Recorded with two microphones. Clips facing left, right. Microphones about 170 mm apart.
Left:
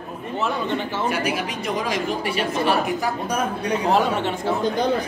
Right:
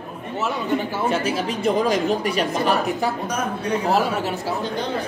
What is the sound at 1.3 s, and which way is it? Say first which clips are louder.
Speech: right 4 dB; 35° right (ahead or behind).